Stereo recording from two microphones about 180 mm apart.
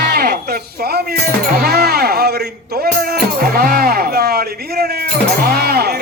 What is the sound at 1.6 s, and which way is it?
Music, 65° right (ahead or behind).